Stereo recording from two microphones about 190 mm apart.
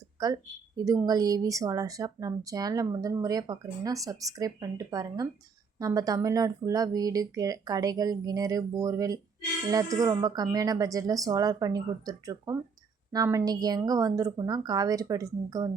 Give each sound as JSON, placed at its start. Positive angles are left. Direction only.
{"t": 0.2, "sound": "speech", "side_deg": -20}